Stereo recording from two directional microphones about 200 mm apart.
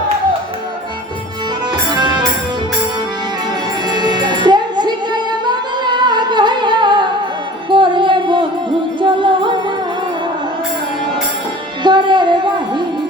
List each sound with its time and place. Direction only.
3.8 s music: 20° right (ahead or behind)
11.8 s music: 20° right (ahead or behind)